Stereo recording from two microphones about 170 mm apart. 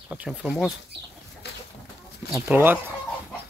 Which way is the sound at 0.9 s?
80° right.